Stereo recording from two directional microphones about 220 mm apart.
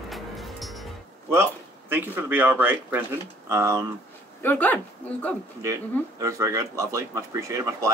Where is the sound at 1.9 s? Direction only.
10° right (ahead or behind).